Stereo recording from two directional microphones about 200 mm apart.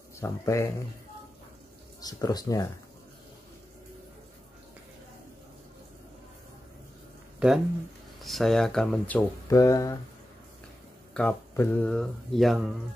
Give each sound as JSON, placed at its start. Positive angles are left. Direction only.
{"t": 0.2, "sound": "speech", "side_deg": 15}
{"t": 2.0, "sound": "speech", "side_deg": 20}
{"t": 7.3, "sound": "speech", "side_deg": -5}
{"t": 11.1, "sound": "speech", "side_deg": 10}